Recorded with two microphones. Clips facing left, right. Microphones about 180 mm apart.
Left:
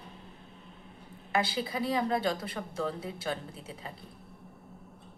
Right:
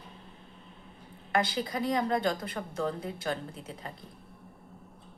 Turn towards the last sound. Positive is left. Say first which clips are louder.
# right 2 dB
turn(degrees=5)  # may be behind; listen again after turning